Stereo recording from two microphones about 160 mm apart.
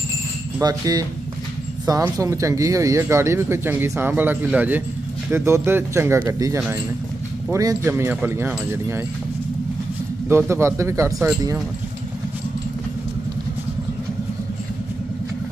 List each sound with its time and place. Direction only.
0.6 s speech: 25° right (ahead or behind)
10.2 s speech: 15° right (ahead or behind)